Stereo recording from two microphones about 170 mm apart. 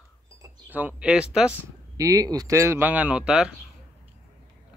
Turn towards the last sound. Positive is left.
turn(degrees=-5)  # may be behind; listen again after turning